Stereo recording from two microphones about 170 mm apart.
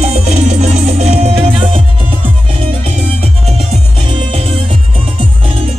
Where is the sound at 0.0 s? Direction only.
40° right (ahead or behind).